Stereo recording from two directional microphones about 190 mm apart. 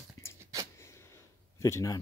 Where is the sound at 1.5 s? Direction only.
15° left (ahead or behind).